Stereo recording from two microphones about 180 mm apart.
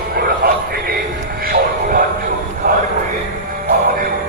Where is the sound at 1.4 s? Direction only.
55° right (ahead or behind).